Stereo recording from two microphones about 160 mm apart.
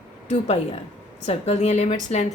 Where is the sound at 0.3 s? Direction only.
45° left (ahead or behind).